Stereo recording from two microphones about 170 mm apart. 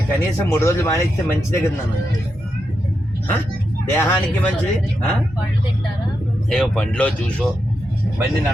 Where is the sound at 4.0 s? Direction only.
10° left (ahead or behind).